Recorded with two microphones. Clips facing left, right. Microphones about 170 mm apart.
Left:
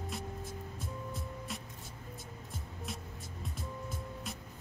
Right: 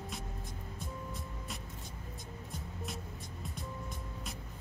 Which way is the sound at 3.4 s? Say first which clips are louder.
Left 2 dB; centre (ahead or behind).